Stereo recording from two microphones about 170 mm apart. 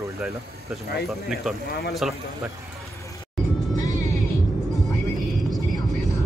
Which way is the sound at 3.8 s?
20° left (ahead or behind).